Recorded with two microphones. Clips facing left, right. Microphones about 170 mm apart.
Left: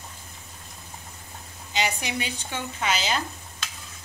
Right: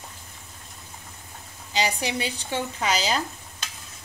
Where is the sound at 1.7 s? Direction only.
35° right (ahead or behind).